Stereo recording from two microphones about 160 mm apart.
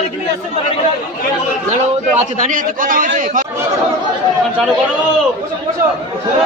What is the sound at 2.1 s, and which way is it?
A man's voice, 55° right (ahead or behind).